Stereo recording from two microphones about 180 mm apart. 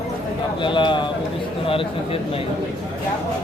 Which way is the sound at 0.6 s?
25° left (ahead or behind).